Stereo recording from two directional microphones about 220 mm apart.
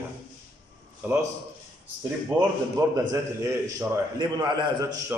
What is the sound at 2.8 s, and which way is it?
A man's voice, 15° right (ahead or behind).